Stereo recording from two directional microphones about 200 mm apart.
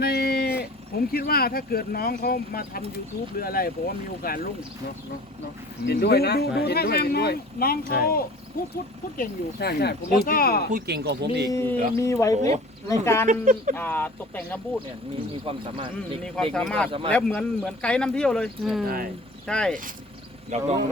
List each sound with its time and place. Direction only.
0.0 s speech: 50° left (ahead or behind)
5.8 s speech: 55° left (ahead or behind)
10.7 s speech: 50° right (ahead or behind)
11.5 s speech: 10° left (ahead or behind)
13.2 s speech: 40° right (ahead or behind)
13.7 s speech: 10° left (ahead or behind)
16.2 s speech: 5° left (ahead or behind)
20.5 s speech: 35° right (ahead or behind)